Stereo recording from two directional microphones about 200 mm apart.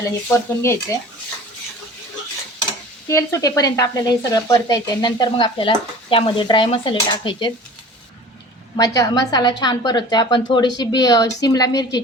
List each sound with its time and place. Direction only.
0.3 s speech: 15° left (ahead or behind)
3.1 s speech: 15° left (ahead or behind)
8.7 s speech: 15° left (ahead or behind)